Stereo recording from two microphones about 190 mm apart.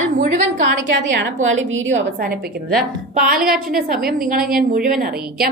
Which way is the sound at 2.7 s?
50° right (ahead or behind).